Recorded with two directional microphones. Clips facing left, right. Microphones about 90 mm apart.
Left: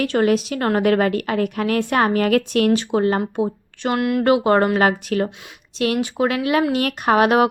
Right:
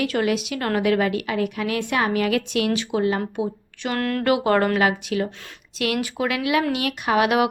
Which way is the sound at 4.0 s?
15° left (ahead or behind).